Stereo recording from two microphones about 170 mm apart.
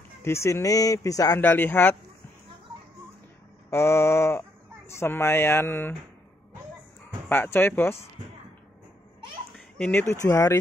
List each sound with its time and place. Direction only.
0.2 s speech: 15° left (ahead or behind)
3.7 s speech: 15° left (ahead or behind)
7.2 s speech: 10° left (ahead or behind)
9.8 s speech: 10° left (ahead or behind)